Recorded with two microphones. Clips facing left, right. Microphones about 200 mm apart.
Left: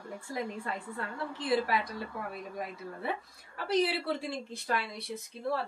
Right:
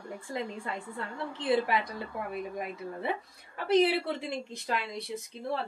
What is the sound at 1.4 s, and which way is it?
Speech, 20° right (ahead or behind).